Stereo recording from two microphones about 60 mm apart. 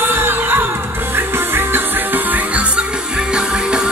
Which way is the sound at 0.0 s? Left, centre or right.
Right.